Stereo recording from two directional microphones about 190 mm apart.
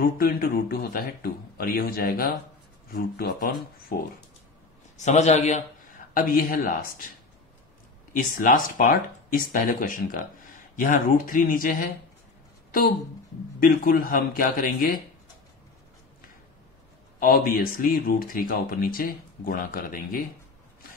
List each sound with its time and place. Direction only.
0.0 s speech: 50° left (ahead or behind)
4.9 s a man's voice: 35° left (ahead or behind)
8.1 s speech: 45° left (ahead or behind)
13.6 s speech: 50° left (ahead or behind)
17.2 s speech: 50° left (ahead or behind)